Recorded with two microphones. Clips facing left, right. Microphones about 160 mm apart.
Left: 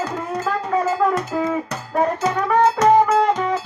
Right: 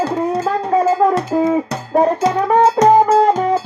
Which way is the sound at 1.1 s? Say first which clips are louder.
Right 6 dB; 40° right (ahead or behind).